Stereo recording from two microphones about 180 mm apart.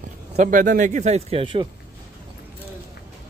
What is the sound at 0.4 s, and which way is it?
Speech, 45° right (ahead or behind).